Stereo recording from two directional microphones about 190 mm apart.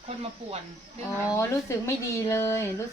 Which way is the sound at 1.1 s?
10° right (ahead or behind).